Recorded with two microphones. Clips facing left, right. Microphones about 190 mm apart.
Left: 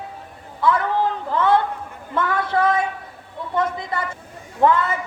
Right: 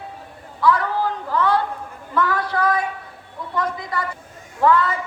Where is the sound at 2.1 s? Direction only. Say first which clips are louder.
Left 1 dB; 25° left (ahead or behind).